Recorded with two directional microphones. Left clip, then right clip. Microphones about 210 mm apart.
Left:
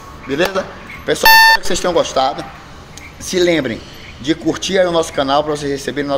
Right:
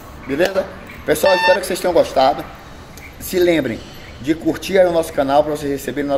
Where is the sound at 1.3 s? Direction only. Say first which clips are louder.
Left 9 dB; 55° left (ahead or behind).